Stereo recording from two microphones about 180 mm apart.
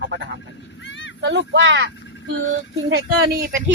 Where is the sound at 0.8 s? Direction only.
90° left.